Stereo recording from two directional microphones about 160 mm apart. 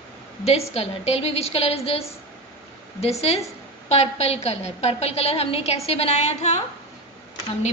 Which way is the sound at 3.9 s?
40° left (ahead or behind).